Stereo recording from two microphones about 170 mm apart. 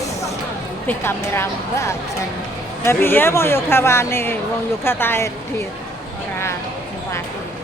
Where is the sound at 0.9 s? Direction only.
15° left (ahead or behind).